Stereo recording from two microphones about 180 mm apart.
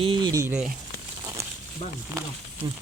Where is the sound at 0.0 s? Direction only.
25° right (ahead or behind).